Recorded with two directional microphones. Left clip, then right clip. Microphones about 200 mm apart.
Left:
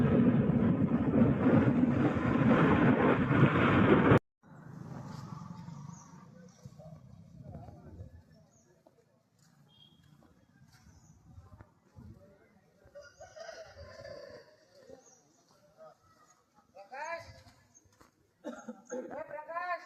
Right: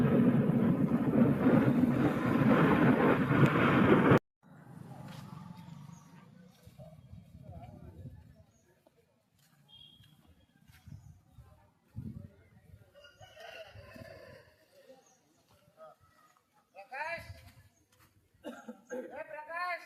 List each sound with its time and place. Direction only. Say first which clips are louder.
0.0 s vehicle: even; centre (ahead or behind)
16.7 s a sound: right 1 dB; 40° right (ahead or behind)
18.4 s cough: left 2 dB; 20° right (ahead or behind)